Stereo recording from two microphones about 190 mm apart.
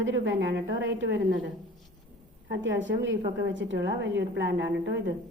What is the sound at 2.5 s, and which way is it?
A woman's voice, 75° right (ahead or behind).